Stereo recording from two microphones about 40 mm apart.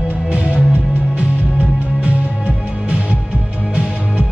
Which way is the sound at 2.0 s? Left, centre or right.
Right.